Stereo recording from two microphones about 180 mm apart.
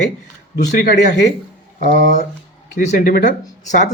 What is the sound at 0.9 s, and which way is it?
Speech, 45° left (ahead or behind).